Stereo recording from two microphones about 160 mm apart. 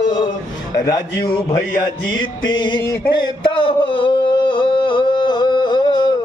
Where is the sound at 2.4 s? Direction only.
30° left (ahead or behind).